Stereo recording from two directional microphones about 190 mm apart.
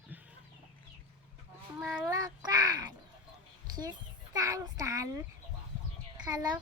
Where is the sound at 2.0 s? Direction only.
20° right (ahead or behind).